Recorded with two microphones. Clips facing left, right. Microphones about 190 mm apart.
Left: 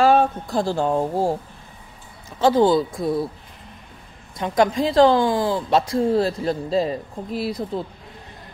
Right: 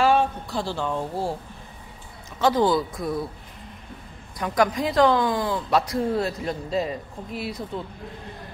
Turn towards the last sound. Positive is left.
turn(degrees=35)  # may be behind; listen again after turning